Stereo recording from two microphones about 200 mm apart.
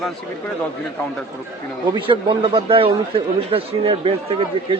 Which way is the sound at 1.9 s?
25° right (ahead or behind).